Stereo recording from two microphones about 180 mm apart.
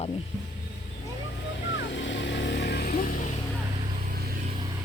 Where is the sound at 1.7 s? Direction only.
90° left; by 2.9 s 60° left (ahead or behind).